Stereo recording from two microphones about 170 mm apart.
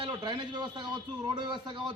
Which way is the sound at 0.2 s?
25° right (ahead or behind).